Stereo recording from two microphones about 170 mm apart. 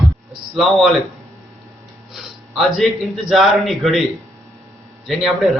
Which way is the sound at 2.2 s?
Centre (ahead or behind).